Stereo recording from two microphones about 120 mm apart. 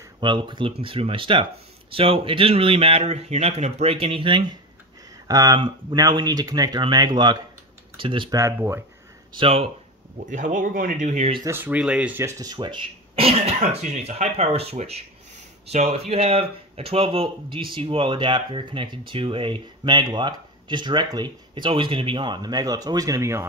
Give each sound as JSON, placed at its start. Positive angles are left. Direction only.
{"t": 0.2, "sound": "speech", "side_deg": -40}
{"t": 5.3, "sound": "speech", "side_deg": -30}
{"t": 8.0, "sound": "speech", "side_deg": -45}
{"t": 8.3, "sound": "speech", "side_deg": -25}
{"t": 9.4, "sound": "speech", "side_deg": -55}
{"t": 10.1, "sound": "speech", "side_deg": -90}
{"t": 11.4, "sound": "speech", "side_deg": -15}
{"t": 12.2, "sound": "speech", "side_deg": -25}
{"t": 12.4, "sound": "speech", "side_deg": -45}
{"t": 13.6, "sound": "speech", "side_deg": -75}